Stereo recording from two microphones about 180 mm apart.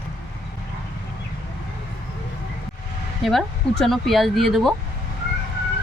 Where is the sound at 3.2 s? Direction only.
Centre (ahead or behind).